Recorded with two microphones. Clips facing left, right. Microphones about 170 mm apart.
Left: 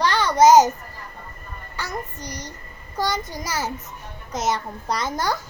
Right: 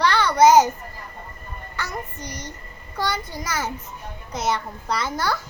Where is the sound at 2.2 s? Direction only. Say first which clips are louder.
Left 1 dB; 10° left (ahead or behind).